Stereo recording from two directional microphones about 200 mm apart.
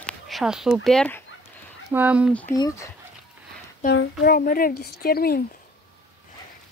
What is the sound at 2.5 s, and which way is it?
Speech, 20° left (ahead or behind).